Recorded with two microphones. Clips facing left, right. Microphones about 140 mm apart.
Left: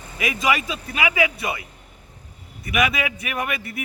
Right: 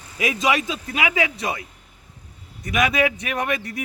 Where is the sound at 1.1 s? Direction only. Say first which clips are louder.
Left 1 dB; 10° left (ahead or behind).